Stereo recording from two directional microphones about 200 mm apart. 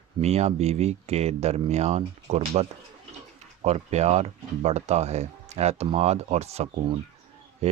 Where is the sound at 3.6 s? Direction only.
35° right (ahead or behind).